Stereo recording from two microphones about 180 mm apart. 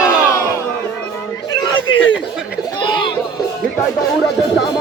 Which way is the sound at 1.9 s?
90° left.